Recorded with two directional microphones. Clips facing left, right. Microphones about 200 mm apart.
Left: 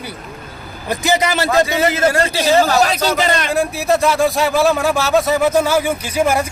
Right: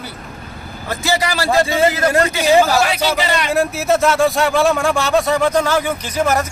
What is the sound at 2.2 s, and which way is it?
Speech, 30° left (ahead or behind).